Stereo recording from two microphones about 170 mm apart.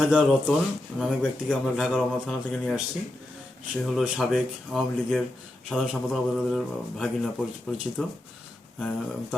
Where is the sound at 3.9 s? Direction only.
Centre (ahead or behind).